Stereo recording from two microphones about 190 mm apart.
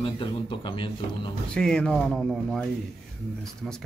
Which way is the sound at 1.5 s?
5° left (ahead or behind).